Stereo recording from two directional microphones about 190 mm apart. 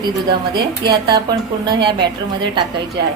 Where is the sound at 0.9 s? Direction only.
20° right (ahead or behind).